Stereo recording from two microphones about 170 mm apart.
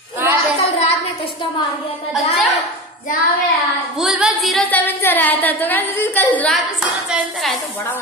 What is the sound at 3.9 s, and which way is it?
A woman's voice, centre (ahead or behind).